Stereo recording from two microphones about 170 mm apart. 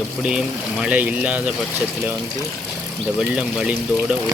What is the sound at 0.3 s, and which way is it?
Speech, 5° right (ahead or behind).